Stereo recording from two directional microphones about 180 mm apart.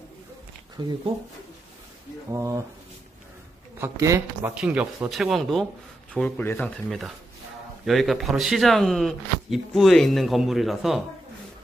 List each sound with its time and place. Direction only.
0.8 s speech: 25° right (ahead or behind)
2.3 s speech: 15° right (ahead or behind)
3.8 s speech: 15° right (ahead or behind); by 6.7 s 10° left (ahead or behind)
7.8 s speech: centre (ahead or behind)